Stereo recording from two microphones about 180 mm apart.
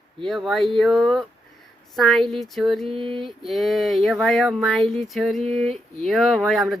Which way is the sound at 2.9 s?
30° right (ahead or behind).